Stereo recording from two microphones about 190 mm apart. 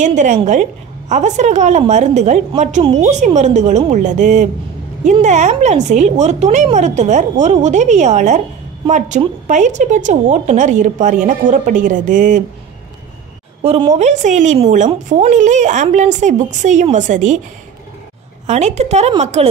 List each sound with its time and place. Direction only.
0.0 s a woman's voice: 40° right (ahead or behind)
13.6 s a woman's voice: 35° right (ahead or behind)
18.5 s a woman's voice: 35° right (ahead or behind)